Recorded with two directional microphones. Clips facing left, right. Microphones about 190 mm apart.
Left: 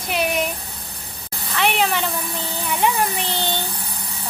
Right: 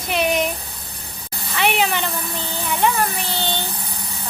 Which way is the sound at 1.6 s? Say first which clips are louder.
Even; centre (ahead or behind).